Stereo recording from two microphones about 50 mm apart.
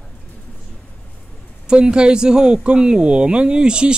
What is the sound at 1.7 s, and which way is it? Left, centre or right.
A woman's voice, centre.